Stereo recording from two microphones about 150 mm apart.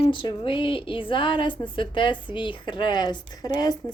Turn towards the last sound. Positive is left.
turn(degrees=25)  # may be behind; listen again after turning